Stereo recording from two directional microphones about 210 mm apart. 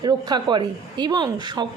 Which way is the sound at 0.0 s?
20° right (ahead or behind).